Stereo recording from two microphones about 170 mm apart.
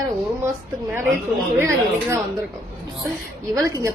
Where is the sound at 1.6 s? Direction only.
15° right (ahead or behind).